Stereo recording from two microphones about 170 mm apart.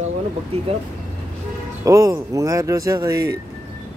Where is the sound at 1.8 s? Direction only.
20° right (ahead or behind).